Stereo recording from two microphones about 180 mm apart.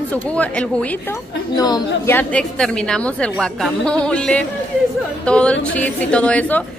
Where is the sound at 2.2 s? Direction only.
5° left (ahead or behind).